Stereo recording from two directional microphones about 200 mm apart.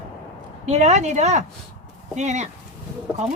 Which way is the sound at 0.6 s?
35° right (ahead or behind).